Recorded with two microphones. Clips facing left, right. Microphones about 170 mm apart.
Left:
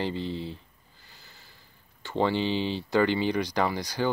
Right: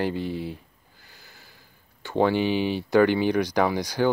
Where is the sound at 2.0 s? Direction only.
10° right (ahead or behind).